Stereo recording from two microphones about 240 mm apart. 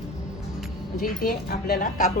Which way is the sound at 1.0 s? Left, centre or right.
Left.